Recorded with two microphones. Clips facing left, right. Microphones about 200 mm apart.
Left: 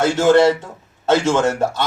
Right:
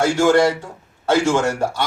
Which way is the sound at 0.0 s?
20° left (ahead or behind).